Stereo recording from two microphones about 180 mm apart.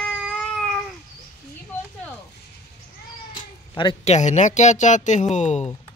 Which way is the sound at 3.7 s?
25° left (ahead or behind).